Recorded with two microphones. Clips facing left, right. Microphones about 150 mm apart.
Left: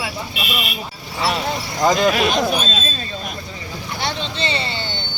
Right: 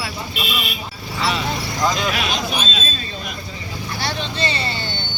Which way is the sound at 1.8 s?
50° left (ahead or behind).